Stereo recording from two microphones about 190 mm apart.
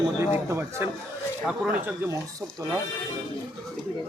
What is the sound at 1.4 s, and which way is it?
Speech, centre (ahead or behind).